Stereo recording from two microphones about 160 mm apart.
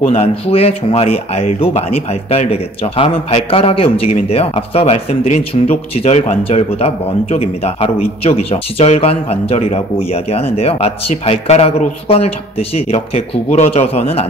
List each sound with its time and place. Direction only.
0.0 s speech: 45° left (ahead or behind)